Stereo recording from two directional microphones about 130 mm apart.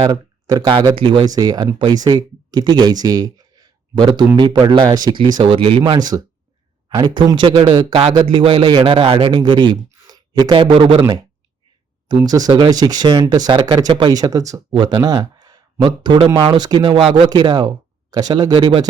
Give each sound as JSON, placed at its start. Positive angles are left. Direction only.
{"t": 0.0, "sound": "speech", "side_deg": -30}
{"t": 9.4, "sound": "speech", "side_deg": -35}
{"t": 12.0, "sound": "speech", "side_deg": -30}